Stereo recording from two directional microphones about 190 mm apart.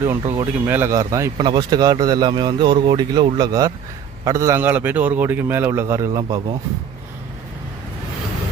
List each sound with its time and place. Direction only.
0.0 s a man's voice: 15° right (ahead or behind)